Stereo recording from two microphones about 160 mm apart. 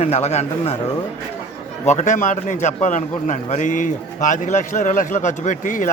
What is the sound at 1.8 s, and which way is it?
A man's voice, 50° left (ahead or behind).